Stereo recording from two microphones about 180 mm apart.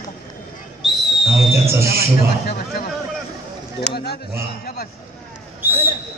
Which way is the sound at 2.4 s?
55° left (ahead or behind).